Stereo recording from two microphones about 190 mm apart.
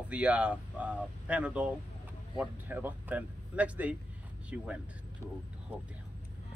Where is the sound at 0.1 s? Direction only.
5° right (ahead or behind).